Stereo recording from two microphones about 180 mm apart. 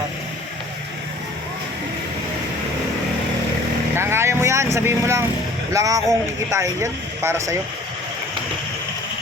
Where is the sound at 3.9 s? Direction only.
15° right (ahead or behind).